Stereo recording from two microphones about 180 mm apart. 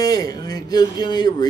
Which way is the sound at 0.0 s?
20° left (ahead or behind).